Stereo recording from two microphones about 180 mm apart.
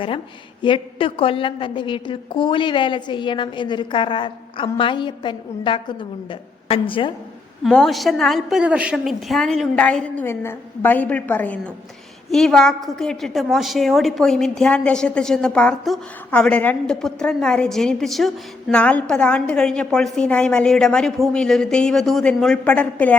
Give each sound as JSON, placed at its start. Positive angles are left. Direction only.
{"t": 0.6, "sound": "a woman's voice", "side_deg": 30}
{"t": 7.6, "sound": "a woman's voice", "side_deg": 0}